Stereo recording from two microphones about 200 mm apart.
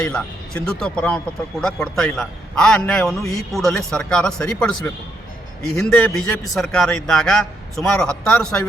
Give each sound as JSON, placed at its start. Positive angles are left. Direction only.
{"t": 0.0, "sound": "a man's voice", "side_deg": 5}